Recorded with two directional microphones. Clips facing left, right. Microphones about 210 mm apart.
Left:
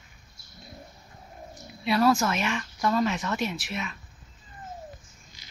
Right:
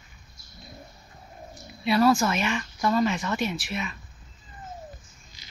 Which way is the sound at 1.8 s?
Centre (ahead or behind).